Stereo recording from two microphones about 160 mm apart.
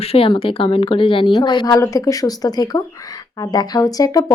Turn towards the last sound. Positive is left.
turn(degrees=25)  # may be behind; listen again after turning